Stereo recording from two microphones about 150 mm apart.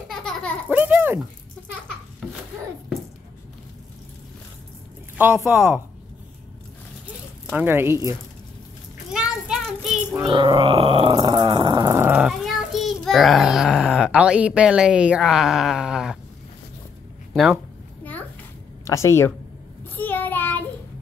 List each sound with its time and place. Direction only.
0.1 s a sound: 5° left (ahead or behind)
0.7 s a sound: 10° right (ahead or behind)
2.2 s a sound: centre (ahead or behind)
5.1 s speech: 15° right (ahead or behind)
7.5 s speech: 15° right (ahead or behind)
9.1 s a sound: 5° right (ahead or behind)
10.2 s groan: 30° right (ahead or behind)
11.1 s speech: 30° right (ahead or behind)
11.9 s a child's voice: 15° right (ahead or behind)
17.3 s speech: centre (ahead or behind)
18.9 s speech: 20° left (ahead or behind)
20.0 s child singing: 10° left (ahead or behind)